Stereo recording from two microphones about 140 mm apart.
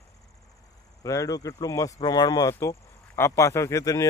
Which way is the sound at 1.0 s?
25° left (ahead or behind).